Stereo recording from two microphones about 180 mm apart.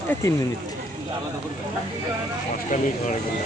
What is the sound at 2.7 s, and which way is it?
Speech, 45° left (ahead or behind).